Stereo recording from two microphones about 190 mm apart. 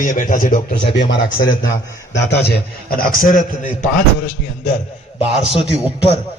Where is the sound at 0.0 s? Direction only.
45° left (ahead or behind).